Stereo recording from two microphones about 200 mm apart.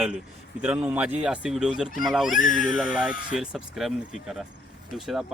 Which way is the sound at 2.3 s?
40° left (ahead or behind).